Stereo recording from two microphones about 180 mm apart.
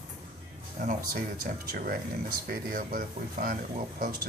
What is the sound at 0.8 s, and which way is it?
Speech, 50° right (ahead or behind).